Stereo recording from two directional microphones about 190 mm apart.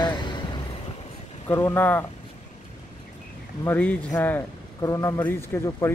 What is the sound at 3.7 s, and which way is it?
A man's voice, 10° left (ahead or behind).